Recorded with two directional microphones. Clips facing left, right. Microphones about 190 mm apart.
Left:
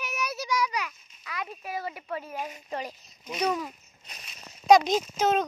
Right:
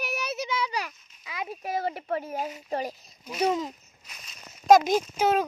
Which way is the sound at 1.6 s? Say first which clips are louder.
Right 5 dB; 40° right (ahead or behind).